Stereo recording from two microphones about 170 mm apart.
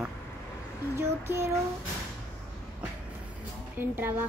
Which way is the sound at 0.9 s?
15° right (ahead or behind).